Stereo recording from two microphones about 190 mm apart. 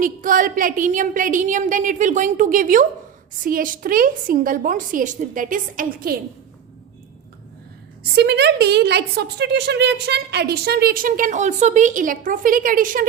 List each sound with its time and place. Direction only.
0.0 s a woman's voice: 45° right (ahead or behind)
8.1 s a woman's voice: 60° right (ahead or behind)